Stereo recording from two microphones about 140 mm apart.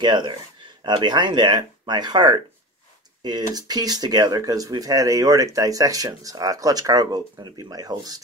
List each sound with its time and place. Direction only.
0.0 s speech: 30° right (ahead or behind)